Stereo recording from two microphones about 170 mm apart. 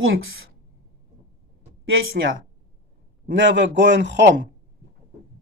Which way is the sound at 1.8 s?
90° right.